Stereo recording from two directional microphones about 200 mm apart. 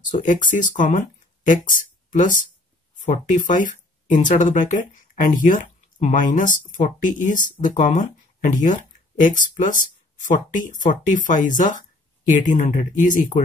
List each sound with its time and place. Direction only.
0.2 s speech: 40° left (ahead or behind)